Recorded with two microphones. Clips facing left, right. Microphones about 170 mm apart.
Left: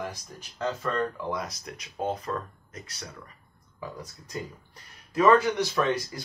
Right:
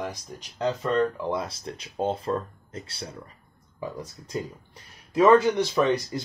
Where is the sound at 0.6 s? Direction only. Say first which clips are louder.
Right 5 dB; 20° right (ahead or behind).